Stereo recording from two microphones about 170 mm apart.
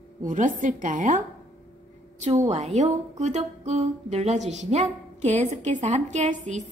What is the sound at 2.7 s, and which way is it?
Speech, 45° right (ahead or behind).